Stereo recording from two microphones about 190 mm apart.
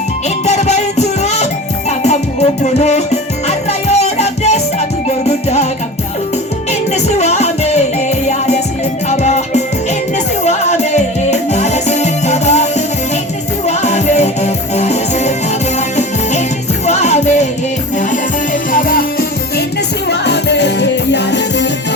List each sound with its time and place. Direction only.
0.4 s music: 35° left (ahead or behind)
6.9 s music: 35° left (ahead or behind)
16.8 s music: 35° left (ahead or behind)
18.7 s music: 45° left (ahead or behind)
20.1 s music: 65° left (ahead or behind)